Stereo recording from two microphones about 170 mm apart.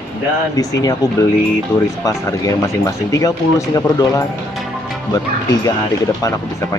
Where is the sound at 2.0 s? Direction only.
20° left (ahead or behind).